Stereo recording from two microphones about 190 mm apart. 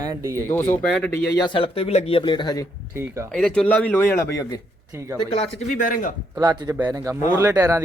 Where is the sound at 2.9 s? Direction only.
15° right (ahead or behind).